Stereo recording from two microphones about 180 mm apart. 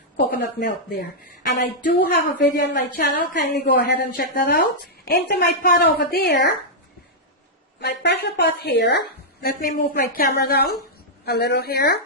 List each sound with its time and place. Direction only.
0.3 s a woman's voice: 55° left (ahead or behind)
7.8 s a woman's voice: 70° left (ahead or behind)